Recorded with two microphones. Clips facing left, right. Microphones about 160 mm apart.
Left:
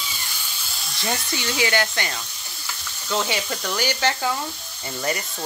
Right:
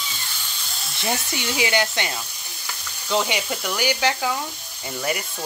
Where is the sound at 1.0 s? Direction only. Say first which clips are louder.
Right 1 dB; 15° right (ahead or behind).